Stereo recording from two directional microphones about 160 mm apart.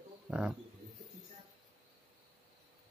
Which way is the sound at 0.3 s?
5° right (ahead or behind).